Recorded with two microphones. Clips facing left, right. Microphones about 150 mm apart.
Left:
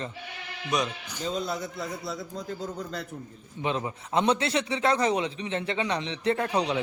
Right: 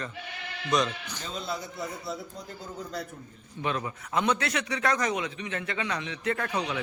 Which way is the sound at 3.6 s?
20° left (ahead or behind).